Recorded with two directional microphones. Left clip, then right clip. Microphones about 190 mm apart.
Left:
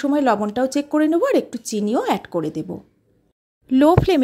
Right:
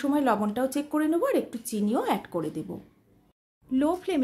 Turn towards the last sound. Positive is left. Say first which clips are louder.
# left 12 dB
turn(degrees=45)  # may be behind; listen again after turning